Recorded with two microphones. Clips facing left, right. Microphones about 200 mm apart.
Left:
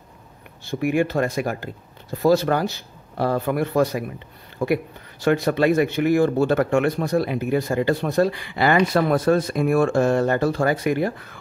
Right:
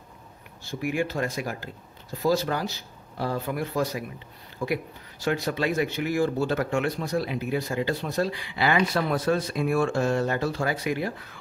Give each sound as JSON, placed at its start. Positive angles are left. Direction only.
{"t": 0.7, "sound": "speech", "side_deg": 60}